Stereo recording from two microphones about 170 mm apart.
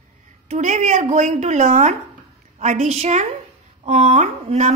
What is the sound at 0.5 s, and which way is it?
A woman's voice, 45° right (ahead or behind).